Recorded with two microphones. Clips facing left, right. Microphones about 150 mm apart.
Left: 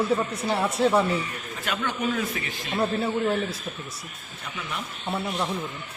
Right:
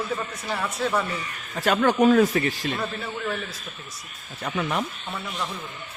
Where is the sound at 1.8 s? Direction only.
40° right (ahead or behind).